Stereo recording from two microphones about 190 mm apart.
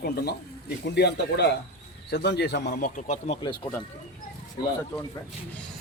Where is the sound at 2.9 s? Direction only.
40° left (ahead or behind).